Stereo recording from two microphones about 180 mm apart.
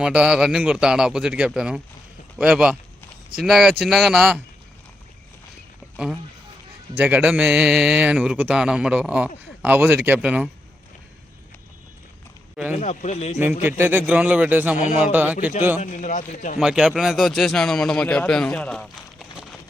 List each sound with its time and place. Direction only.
0.0 s a man's voice: 5° right (ahead or behind)
6.9 s a man's voice: 10° right (ahead or behind)
12.7 s speech: 40° left (ahead or behind)
13.6 s a man's voice: 10° right (ahead or behind)
15.8 s a man's voice: 45° left (ahead or behind)
16.6 s a man's voice: 5° right (ahead or behind)